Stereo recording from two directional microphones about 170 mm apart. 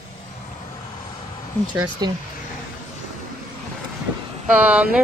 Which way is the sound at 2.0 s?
25° right (ahead or behind).